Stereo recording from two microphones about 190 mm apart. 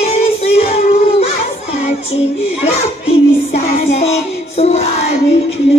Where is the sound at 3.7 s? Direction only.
35° left (ahead or behind).